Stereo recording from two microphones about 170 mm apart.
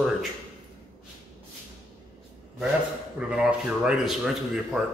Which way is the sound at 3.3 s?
5° right (ahead or behind).